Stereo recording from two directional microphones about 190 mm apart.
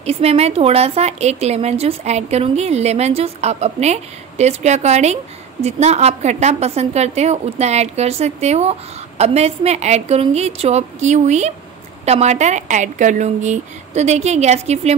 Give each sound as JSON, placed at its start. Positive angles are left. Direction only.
{"t": 0.0, "sound": "a woman's voice", "side_deg": -35}